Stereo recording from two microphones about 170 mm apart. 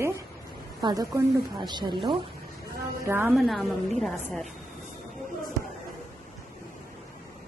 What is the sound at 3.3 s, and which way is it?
A woman's voice, centre (ahead or behind).